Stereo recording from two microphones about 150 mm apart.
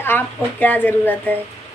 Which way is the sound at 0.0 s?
10° left (ahead or behind).